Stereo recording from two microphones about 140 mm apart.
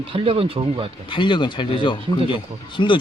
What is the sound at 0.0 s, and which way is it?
Speech, 45° right (ahead or behind).